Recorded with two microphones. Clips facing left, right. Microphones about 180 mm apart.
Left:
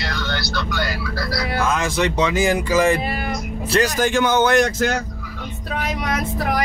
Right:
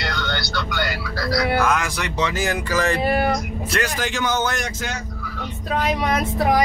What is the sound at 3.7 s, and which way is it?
Speech, 40° left (ahead or behind).